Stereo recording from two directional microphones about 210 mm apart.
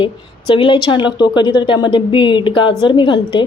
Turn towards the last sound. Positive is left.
turn(degrees=20)  # may be behind; listen again after turning